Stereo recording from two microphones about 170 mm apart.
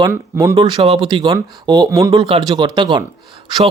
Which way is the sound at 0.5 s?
30° right (ahead or behind).